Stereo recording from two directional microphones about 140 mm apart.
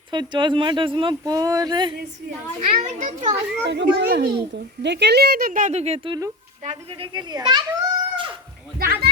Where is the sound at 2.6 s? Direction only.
55° right (ahead or behind).